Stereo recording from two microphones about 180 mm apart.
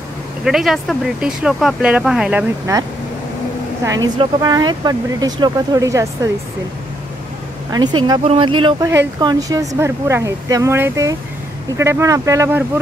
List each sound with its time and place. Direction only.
0.5 s speech: centre (ahead or behind)
2.7 s speech: 15° right (ahead or behind)
7.7 s speech: 25° right (ahead or behind)